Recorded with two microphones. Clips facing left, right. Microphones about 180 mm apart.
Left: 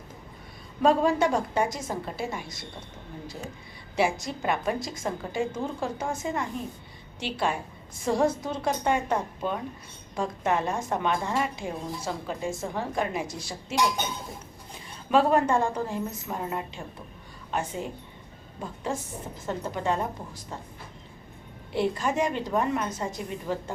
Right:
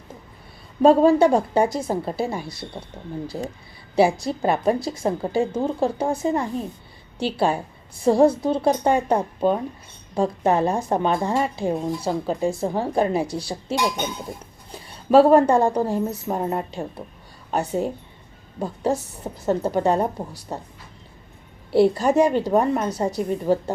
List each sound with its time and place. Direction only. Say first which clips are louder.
0.8 s speech: right 8 dB; 35° right (ahead or behind)
3.9 s speech: right 8 dB; 35° right (ahead or behind)
21.7 s speech: right 10 dB; 35° right (ahead or behind)